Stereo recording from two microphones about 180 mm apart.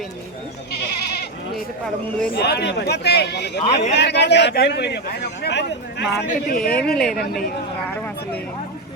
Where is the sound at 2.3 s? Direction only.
65° left (ahead or behind).